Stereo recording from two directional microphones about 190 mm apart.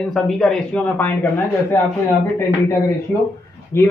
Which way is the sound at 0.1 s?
5° left (ahead or behind).